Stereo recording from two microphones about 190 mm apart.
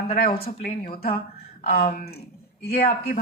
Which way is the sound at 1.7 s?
50° left (ahead or behind).